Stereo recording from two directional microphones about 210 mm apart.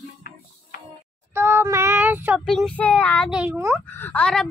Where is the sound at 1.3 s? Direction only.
10° right (ahead or behind).